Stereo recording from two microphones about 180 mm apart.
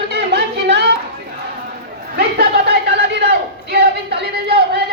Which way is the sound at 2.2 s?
65° right (ahead or behind).